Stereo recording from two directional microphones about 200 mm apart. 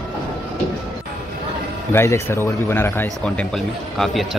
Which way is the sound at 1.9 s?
15° left (ahead or behind).